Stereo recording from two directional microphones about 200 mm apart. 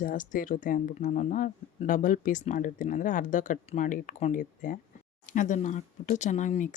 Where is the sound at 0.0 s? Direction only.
40° left (ahead or behind).